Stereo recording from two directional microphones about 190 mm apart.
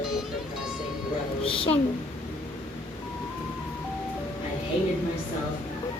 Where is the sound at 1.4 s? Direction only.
30° left (ahead or behind).